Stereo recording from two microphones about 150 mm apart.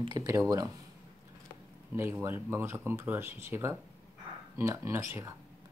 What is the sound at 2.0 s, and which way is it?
Speech, 15° right (ahead or behind).